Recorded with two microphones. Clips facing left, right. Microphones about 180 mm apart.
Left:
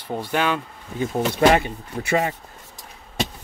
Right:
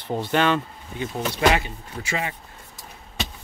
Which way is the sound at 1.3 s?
55° left (ahead or behind).